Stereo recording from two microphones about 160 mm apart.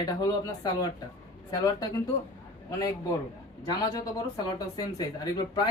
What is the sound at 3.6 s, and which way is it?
Speech, 25° left (ahead or behind).